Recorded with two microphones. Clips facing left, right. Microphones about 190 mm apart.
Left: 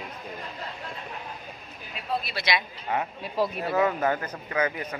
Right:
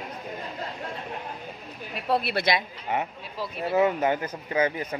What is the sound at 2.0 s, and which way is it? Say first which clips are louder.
Speech: right 5 dB; 70° right (ahead or behind).